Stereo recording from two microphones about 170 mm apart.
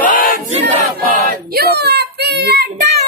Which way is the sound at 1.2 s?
70° right (ahead or behind).